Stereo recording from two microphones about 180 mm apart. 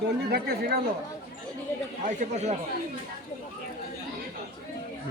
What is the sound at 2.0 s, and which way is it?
Speech, 40° right (ahead or behind).